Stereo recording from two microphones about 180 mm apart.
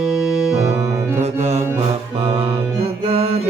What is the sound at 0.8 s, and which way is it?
Music, 35° right (ahead or behind).